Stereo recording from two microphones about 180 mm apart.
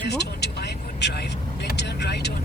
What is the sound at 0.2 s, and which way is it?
Vehicle, 65° left (ahead or behind).